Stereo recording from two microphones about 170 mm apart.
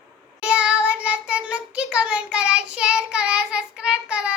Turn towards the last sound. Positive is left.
turn(degrees=-5)  # may be behind; listen again after turning